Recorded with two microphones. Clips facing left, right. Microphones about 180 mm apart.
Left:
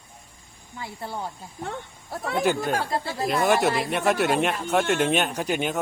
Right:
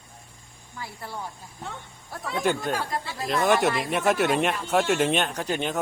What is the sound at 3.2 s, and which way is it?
A man's voice, 5° left (ahead or behind).